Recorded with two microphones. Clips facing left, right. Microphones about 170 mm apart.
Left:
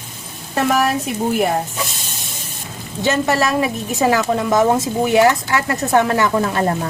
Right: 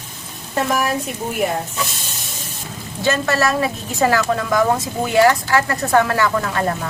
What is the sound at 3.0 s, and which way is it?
A woman's voice, 15° left (ahead or behind).